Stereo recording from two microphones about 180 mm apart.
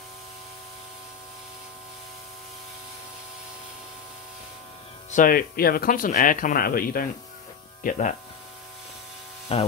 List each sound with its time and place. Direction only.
5.1 s speech: 50° left (ahead or behind)
9.5 s speech: 35° left (ahead or behind)